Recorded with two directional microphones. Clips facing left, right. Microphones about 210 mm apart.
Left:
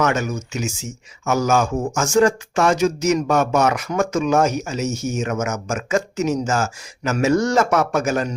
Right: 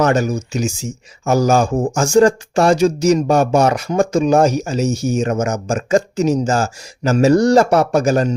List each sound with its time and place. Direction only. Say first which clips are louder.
0.0 s speech: right 5 dB; 35° right (ahead or behind)